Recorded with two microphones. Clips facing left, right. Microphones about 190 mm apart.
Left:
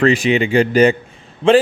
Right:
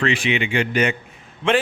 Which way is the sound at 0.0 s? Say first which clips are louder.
Left 7 dB; 40° left (ahead or behind).